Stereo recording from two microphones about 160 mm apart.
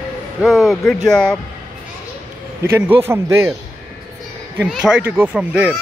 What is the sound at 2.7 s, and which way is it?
Speech, 15° right (ahead or behind).